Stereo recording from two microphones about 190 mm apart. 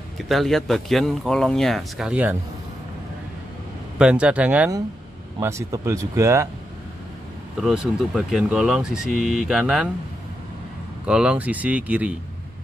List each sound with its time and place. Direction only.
0.3 s speech: centre (ahead or behind)
4.0 s speech: 5° right (ahead or behind)
7.6 s speech: 5° right (ahead or behind)
11.1 s speech: 5° right (ahead or behind)